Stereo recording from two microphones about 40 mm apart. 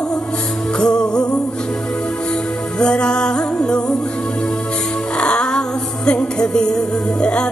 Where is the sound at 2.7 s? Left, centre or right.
Left.